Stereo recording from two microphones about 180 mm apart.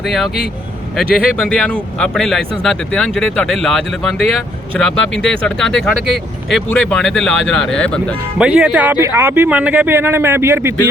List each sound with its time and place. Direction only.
0.0 s speech: centre (ahead or behind)
8.4 s speech: 5° right (ahead or behind)